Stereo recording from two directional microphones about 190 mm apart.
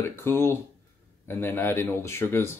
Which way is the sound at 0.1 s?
10° left (ahead or behind).